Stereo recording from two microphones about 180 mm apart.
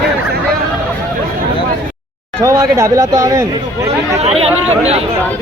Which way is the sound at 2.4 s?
20° right (ahead or behind).